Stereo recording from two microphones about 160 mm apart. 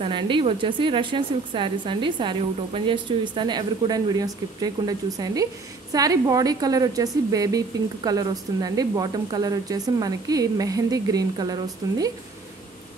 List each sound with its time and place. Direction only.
0.0 s a woman's voice: 30° right (ahead or behind)